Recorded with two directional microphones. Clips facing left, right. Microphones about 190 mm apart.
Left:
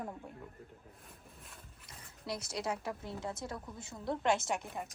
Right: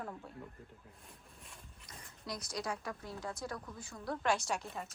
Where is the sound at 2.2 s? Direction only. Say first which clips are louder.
Left 3 dB; 25° left (ahead or behind).